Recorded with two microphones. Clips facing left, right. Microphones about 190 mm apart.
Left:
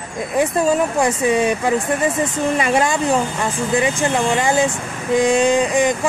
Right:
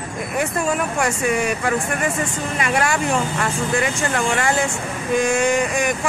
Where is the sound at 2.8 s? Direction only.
20° left (ahead or behind).